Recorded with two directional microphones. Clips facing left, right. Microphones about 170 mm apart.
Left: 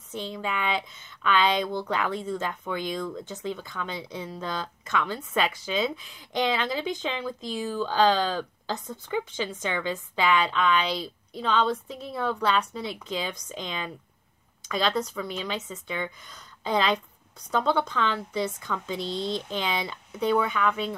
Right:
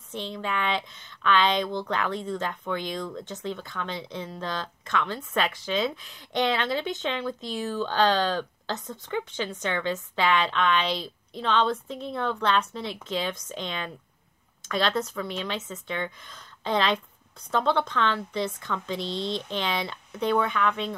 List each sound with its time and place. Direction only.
0.1 s speech: 5° left (ahead or behind)